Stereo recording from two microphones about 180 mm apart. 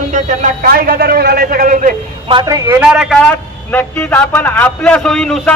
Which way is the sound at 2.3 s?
20° right (ahead or behind).